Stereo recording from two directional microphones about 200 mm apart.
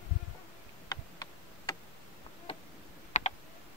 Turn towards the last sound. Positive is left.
turn(degrees=35)  # may be behind; listen again after turning